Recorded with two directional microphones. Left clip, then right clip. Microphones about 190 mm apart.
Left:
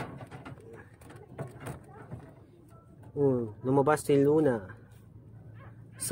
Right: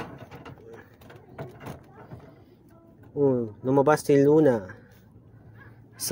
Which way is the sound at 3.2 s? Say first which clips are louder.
Right 4 dB; 20° right (ahead or behind).